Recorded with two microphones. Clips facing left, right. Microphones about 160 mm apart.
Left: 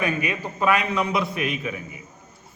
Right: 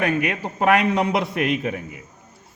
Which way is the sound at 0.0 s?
75° right (ahead or behind).